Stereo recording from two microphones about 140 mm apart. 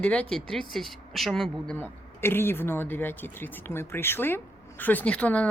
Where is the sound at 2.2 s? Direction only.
15° left (ahead or behind).